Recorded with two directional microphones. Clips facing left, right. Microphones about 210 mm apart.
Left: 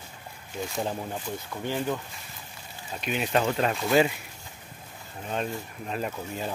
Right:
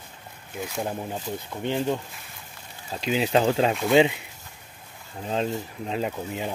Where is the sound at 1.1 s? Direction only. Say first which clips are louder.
Right 2 dB; 20° right (ahead or behind).